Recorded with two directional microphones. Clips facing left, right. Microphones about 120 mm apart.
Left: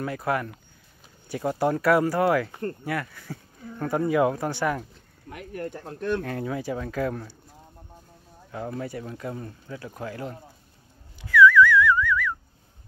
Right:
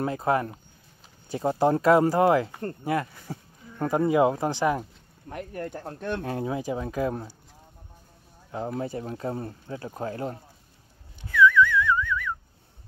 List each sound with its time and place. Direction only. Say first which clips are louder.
0.0 s speech: right 3 dB; 25° right (ahead or behind)
5.3 s speech: right 2 dB; 35° right (ahead or behind)
6.2 s speech: right 1 dB; 25° right (ahead or behind)
8.7 s speech: right 2 dB; 30° right (ahead or behind)
11.2 s whistling: left 3 dB; 25° right (ahead or behind)